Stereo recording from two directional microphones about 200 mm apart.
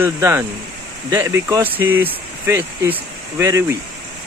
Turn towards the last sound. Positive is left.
turn(degrees=-15)  # may be behind; listen again after turning